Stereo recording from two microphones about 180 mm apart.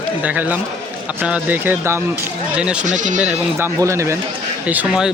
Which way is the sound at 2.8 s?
45° right (ahead or behind).